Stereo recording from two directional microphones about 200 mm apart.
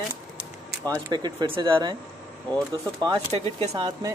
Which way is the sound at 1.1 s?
20° right (ahead or behind).